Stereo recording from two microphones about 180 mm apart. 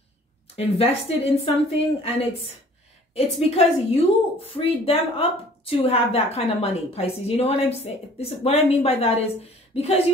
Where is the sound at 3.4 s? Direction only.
35° left (ahead or behind).